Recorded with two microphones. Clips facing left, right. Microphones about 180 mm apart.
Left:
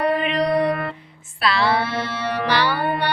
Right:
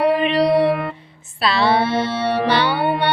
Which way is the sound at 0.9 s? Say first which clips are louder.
Right 4 dB; 25° right (ahead or behind).